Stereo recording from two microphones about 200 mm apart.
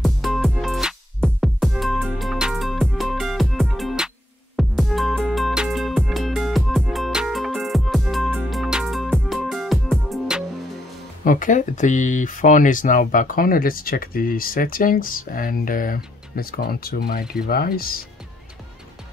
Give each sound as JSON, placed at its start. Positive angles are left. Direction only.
{"t": 0.0, "sound": "music", "side_deg": 0}
{"t": 11.2, "sound": "speech", "side_deg": 40}